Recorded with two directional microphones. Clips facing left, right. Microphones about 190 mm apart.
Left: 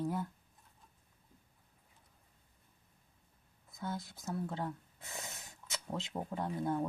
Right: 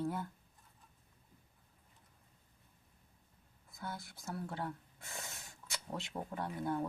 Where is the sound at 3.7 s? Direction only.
20° left (ahead or behind).